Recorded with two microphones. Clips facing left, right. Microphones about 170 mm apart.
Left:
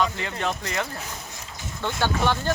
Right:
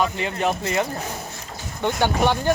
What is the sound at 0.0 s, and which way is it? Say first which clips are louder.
Speech: right 3 dB; 15° right (ahead or behind).